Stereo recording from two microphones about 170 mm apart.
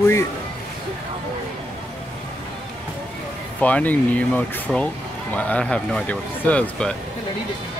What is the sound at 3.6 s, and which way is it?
Speech, 10° left (ahead or behind).